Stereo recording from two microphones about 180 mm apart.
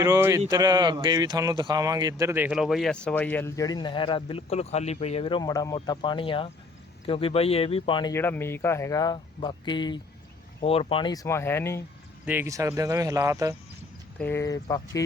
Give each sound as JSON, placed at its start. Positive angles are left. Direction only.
{"t": 0.0, "sound": "a sound", "side_deg": -15}
{"t": 0.5, "sound": "speech", "side_deg": -20}
{"t": 8.1, "sound": "speech", "side_deg": 10}
{"t": 12.2, "sound": "speech", "side_deg": -10}
{"t": 14.2, "sound": "speech", "side_deg": 15}